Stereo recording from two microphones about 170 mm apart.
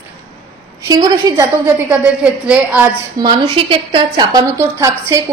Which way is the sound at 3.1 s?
25° right (ahead or behind).